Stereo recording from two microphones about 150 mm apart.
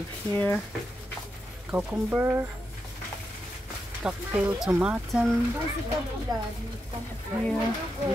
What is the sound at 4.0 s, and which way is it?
Speech, 5° right (ahead or behind).